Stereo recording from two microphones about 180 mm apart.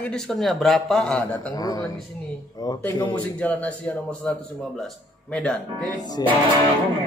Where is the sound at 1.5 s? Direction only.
20° left (ahead or behind).